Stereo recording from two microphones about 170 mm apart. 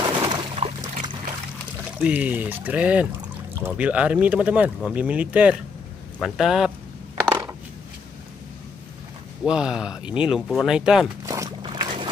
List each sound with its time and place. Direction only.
0.0 s a sound: 30° right (ahead or behind)
1.9 s speech: 10° right (ahead or behind)
7.2 s crushing: 25° right (ahead or behind)
9.4 s speech: 5° right (ahead or behind)
11.2 s a sound: 20° right (ahead or behind)
11.6 s boat: 30° right (ahead or behind)